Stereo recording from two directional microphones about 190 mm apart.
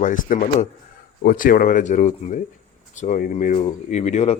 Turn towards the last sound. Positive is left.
turn(degrees=35)  # may be behind; listen again after turning